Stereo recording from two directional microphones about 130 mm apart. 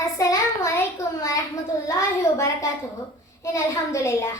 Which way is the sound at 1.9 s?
25° left (ahead or behind).